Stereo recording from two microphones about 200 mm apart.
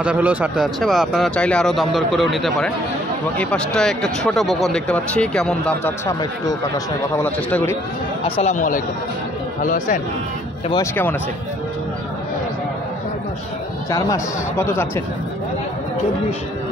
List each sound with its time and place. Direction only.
0.0 s speech: 5° right (ahead or behind); by 7.7 s 10° left (ahead or behind)
8.4 s speech: 35° left (ahead or behind)
10.7 s speech: 10° left (ahead or behind)
13.8 s speech: 15° left (ahead or behind)